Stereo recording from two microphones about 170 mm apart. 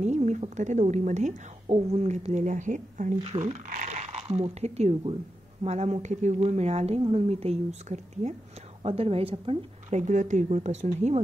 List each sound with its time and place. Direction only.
0.0 s a woman's voice: 45° right (ahead or behind)